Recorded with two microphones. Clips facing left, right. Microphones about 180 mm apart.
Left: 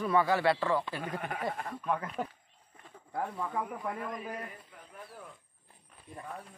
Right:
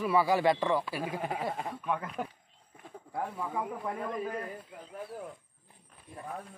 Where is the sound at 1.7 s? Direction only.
Centre (ahead or behind).